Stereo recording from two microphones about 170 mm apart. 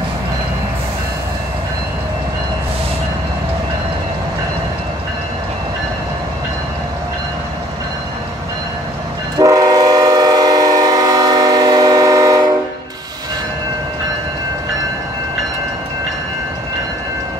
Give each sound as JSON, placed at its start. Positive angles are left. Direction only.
{"t": 9.4, "sound": "train", "side_deg": -20}